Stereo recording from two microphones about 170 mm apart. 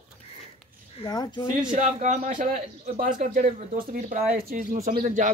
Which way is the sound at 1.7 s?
45° right (ahead or behind).